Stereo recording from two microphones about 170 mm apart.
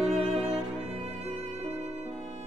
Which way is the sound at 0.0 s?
40° right (ahead or behind).